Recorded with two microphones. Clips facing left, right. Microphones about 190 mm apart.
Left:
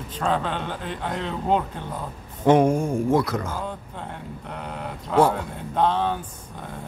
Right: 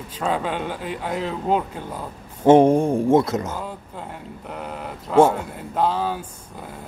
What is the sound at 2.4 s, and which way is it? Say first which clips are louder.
Speech: right 4 dB; 30° right (ahead or behind).